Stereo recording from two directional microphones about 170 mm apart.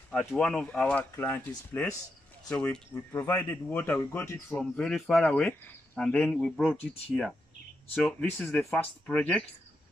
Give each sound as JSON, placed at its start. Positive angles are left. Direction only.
{"t": 0.3, "sound": "speech", "side_deg": 5}
{"t": 8.0, "sound": "speech", "side_deg": 10}